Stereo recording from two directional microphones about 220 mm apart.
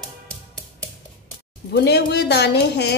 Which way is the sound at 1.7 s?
50° left (ahead or behind).